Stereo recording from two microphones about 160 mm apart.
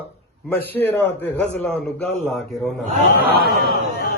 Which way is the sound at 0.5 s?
10° left (ahead or behind).